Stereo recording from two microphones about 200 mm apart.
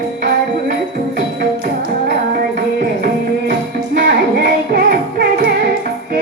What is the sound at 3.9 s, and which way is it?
Music, 45° right (ahead or behind).